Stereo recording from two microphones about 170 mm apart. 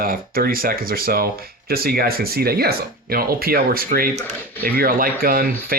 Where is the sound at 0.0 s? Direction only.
60° right (ahead or behind).